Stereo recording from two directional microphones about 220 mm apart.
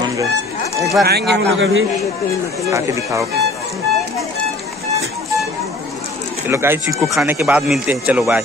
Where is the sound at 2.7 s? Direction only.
15° right (ahead or behind).